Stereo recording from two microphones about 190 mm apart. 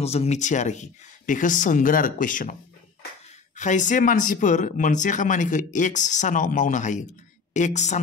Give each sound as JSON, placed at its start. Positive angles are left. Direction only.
{"t": 0.0, "sound": "speech", "side_deg": 35}
{"t": 3.5, "sound": "speech", "side_deg": 40}